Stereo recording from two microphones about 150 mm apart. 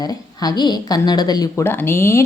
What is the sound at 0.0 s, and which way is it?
A woman's voice, 25° left (ahead or behind).